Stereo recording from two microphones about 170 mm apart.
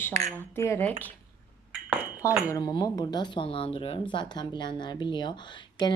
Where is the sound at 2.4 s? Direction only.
20° left (ahead or behind).